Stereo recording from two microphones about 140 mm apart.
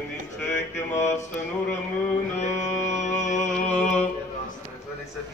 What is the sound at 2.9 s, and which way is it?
Music, 60° left (ahead or behind).